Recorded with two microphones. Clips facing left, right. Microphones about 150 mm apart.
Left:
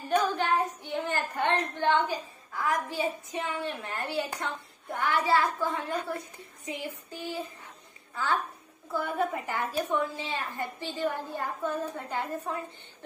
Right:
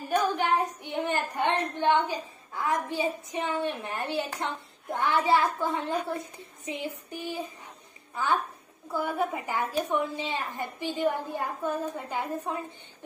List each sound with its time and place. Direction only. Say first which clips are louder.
0.1 s child singing: right 1 dB; 15° right (ahead or behind)
4.9 s a child's voice: right 2 dB; 20° right (ahead or behind)